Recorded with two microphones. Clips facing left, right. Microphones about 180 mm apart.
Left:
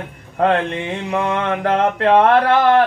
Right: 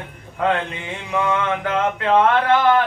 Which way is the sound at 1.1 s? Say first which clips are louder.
Even; 40° left (ahead or behind).